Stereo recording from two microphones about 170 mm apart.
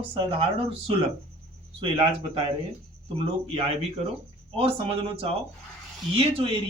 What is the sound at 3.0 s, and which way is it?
A man's voice, 35° right (ahead or behind).